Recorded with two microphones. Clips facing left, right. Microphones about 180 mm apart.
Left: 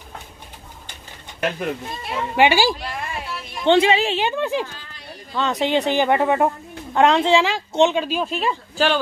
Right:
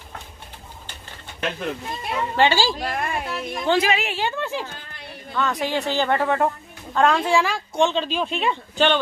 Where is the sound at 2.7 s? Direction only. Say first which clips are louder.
Right 4 dB; 50° right (ahead or behind).